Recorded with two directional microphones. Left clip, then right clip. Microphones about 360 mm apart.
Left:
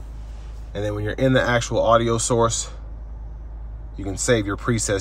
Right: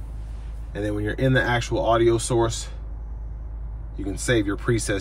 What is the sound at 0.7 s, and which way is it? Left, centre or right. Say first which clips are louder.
Speech: left 1 dB; centre.